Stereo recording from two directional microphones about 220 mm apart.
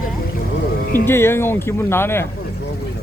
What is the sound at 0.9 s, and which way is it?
Speech, 10° left (ahead or behind).